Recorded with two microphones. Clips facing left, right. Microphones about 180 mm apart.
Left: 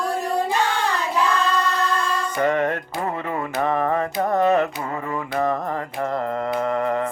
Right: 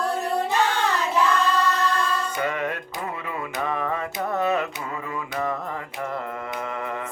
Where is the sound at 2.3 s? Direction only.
50° left (ahead or behind).